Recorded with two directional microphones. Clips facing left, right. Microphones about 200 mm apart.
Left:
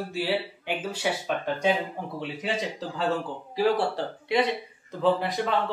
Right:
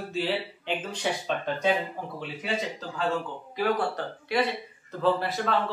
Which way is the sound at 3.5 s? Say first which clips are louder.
Left 3 dB; 30° left (ahead or behind).